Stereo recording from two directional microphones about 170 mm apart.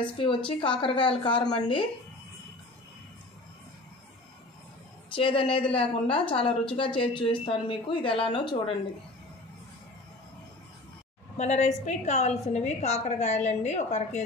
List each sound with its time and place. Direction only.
0.0 s a woman's voice: 30° left (ahead or behind)
5.1 s a woman's voice: 30° left (ahead or behind)
11.3 s a woman's voice: 40° left (ahead or behind)